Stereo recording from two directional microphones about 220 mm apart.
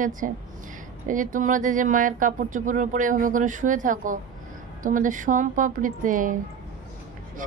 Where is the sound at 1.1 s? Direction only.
35° right (ahead or behind).